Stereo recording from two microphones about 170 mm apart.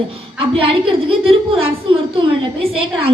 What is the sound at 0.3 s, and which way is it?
A woman's voice, 30° right (ahead or behind).